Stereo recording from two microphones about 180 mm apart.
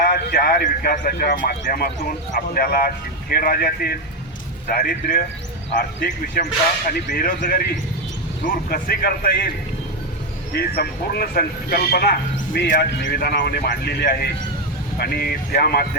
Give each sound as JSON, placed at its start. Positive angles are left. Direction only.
{"t": 0.0, "sound": "speech", "side_deg": 55}
{"t": 10.5, "sound": "speech", "side_deg": 60}
{"t": 13.3, "sound": "speech", "side_deg": 65}